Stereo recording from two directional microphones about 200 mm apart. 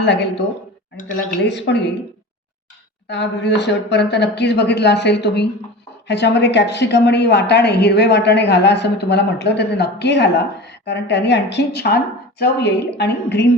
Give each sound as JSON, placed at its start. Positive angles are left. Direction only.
{"t": 0.0, "sound": "a woman's voice", "side_deg": 60}
{"t": 3.1, "sound": "a woman's voice", "side_deg": 60}